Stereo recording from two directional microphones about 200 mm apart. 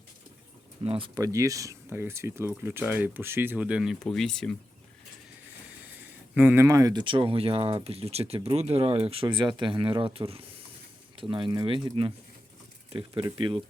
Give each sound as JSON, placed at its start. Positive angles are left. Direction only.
{"t": 0.9, "sound": "speech", "side_deg": -25}
{"t": 6.3, "sound": "speech", "side_deg": -10}